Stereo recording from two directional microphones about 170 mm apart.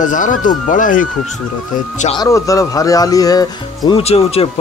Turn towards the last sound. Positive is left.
turn(degrees=35)  # may be behind; listen again after turning